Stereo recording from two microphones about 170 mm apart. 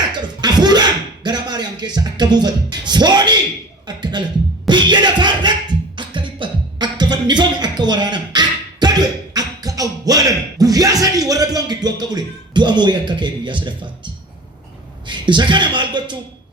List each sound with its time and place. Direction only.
0.4 s a sound: 25° right (ahead or behind)
3.8 s speech: 25° right (ahead or behind)
4.6 s music: 25° right (ahead or behind)
6.0 s beatboxing: 30° right (ahead or behind)
15.0 s a man's voice: 25° right (ahead or behind)